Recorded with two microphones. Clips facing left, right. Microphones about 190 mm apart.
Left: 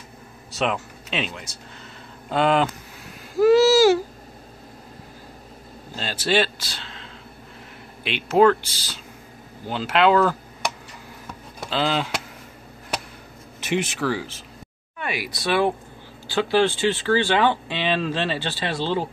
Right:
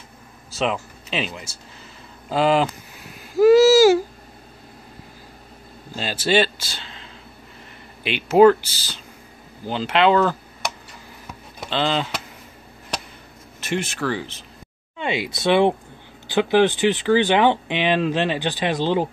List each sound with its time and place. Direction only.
0.5 s speech: centre (ahead or behind)
3.3 s baby cry: 5° right (ahead or behind)
6.2 s speech: centre (ahead or behind)
13.9 s speech: 5° left (ahead or behind)
15.0 s speech: 25° right (ahead or behind)